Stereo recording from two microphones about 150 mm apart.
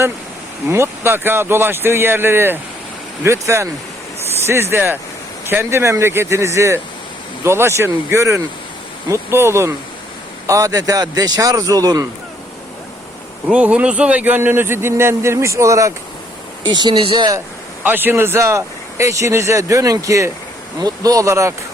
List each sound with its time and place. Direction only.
0.7 s speech: 15° right (ahead or behind)
13.5 s speech: 10° right (ahead or behind); by 17.2 s 40° right (ahead or behind)
17.8 s speech: 15° right (ahead or behind)